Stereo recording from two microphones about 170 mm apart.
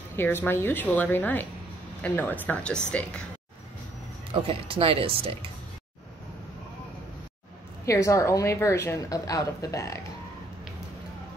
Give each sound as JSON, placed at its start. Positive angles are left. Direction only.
{"t": 0.1, "sound": "a woman's voice", "side_deg": 15}
{"t": 4.3, "sound": "speech", "side_deg": -35}
{"t": 7.8, "sound": "a woman's voice", "side_deg": 20}